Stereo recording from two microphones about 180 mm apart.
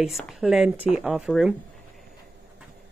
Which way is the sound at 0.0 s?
Centre (ahead or behind).